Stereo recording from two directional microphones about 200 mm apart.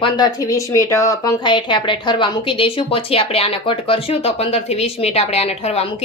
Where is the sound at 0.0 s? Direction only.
20° left (ahead or behind).